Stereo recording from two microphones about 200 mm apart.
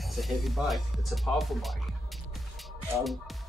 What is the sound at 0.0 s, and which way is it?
Speech, centre (ahead or behind).